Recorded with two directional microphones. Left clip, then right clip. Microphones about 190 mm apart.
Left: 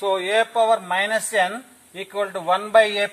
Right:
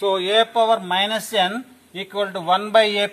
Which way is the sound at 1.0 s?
35° left (ahead or behind).